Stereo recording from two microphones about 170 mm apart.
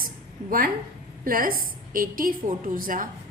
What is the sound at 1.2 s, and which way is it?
A woman's voice, 55° right (ahead or behind).